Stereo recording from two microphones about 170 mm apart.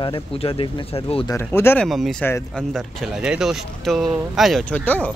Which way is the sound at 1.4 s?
15° left (ahead or behind).